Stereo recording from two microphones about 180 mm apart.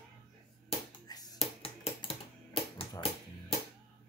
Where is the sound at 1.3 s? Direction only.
35° left (ahead or behind).